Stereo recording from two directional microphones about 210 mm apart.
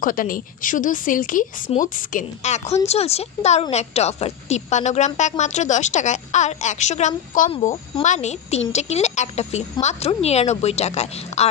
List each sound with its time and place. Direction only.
0.0 s speech: 40° left (ahead or behind)
7.5 s speech: 25° left (ahead or behind)